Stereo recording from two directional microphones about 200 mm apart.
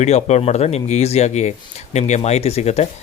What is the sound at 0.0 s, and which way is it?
Speech, 35° left (ahead or behind).